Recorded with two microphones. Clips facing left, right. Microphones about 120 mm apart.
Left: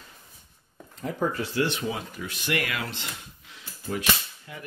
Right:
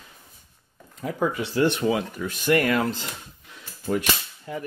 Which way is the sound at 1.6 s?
60° right (ahead or behind).